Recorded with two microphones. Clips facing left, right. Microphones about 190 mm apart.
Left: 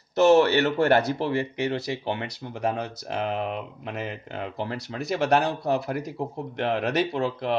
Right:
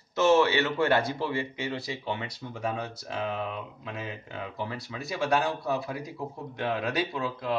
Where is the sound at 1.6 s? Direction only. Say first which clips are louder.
Left 6 dB; 65° left (ahead or behind).